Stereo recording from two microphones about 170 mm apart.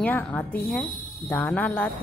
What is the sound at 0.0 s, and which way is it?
A woman's voice, 10° left (ahead or behind).